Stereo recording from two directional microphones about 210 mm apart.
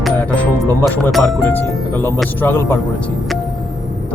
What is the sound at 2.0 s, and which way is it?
Speech, 15° right (ahead or behind).